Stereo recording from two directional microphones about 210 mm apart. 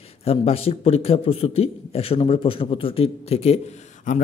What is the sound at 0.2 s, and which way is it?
A man's voice, 30° left (ahead or behind).